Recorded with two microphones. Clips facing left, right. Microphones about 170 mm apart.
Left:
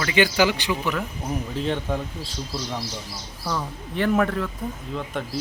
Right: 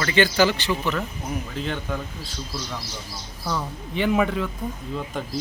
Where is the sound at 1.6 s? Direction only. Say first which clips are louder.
Left 5 dB; 30° left (ahead or behind).